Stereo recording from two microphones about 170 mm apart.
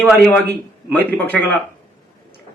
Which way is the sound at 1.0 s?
10° left (ahead or behind).